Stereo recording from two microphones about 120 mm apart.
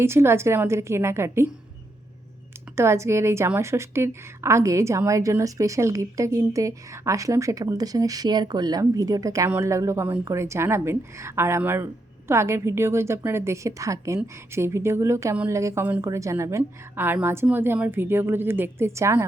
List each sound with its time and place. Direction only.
0.0 s a woman's voice: 20° right (ahead or behind)
2.7 s a woman's voice: 25° right (ahead or behind)